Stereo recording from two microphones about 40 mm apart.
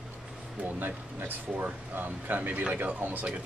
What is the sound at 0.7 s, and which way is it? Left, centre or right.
Speech, right.